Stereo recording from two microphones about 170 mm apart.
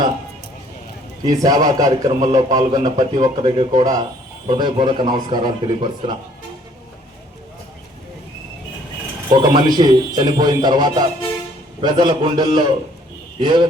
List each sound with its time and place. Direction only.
1.2 s a man's voice: 20° right (ahead or behind)
9.3 s a man's voice: 25° right (ahead or behind)